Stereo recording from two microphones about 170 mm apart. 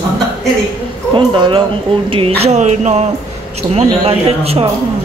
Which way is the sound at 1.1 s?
30° right (ahead or behind).